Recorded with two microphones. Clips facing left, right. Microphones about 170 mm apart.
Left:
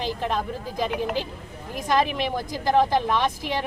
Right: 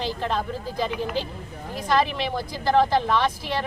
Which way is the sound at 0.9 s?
50° left (ahead or behind).